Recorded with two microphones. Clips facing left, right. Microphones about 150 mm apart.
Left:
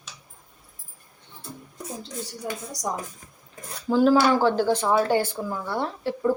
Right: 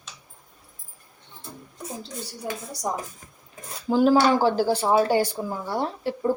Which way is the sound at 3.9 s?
15° right (ahead or behind).